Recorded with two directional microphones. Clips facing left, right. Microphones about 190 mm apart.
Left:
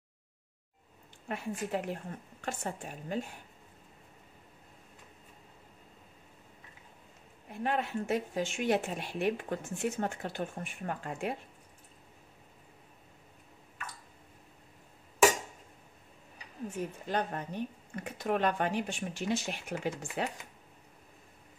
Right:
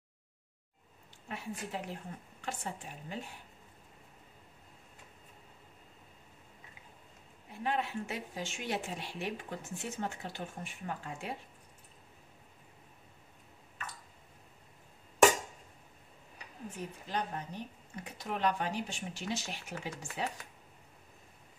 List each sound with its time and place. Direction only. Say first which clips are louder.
1.3 s speech: left 6 dB; 50° left (ahead or behind)
7.6 s speech: left 3 dB; 50° left (ahead or behind)
16.7 s speech: left 4 dB; 55° left (ahead or behind)